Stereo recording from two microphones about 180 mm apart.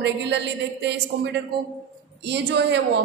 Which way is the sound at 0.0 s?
75° right (ahead or behind).